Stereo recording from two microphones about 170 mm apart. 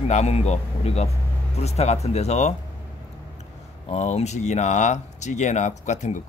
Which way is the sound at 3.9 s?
40° left (ahead or behind).